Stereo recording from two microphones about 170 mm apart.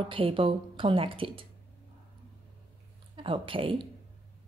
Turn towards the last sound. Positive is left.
turn(degrees=-30)  # may be behind; listen again after turning